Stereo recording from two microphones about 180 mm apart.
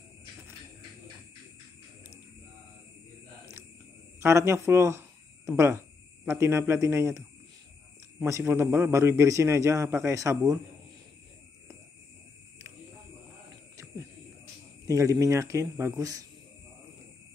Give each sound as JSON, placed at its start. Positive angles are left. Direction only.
{"t": 4.2, "sound": "a sound", "side_deg": -15}
{"t": 5.6, "sound": "a man's voice", "side_deg": -15}
{"t": 14.9, "sound": "a man's voice", "side_deg": -20}